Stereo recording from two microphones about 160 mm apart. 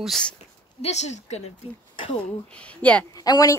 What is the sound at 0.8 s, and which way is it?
Speech, 45° left (ahead or behind).